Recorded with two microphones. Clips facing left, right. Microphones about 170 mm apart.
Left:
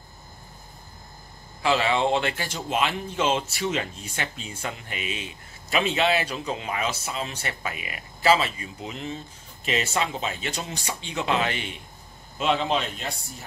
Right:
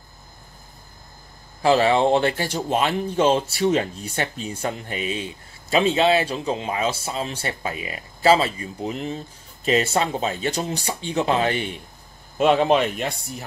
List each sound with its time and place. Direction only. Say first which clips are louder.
1.6 s speech: right 6 dB; 40° right (ahead or behind)
12.4 s a man's voice: right 7 dB; 55° right (ahead or behind)